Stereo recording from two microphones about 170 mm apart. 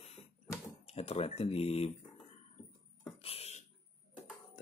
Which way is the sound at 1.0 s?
35° left (ahead or behind).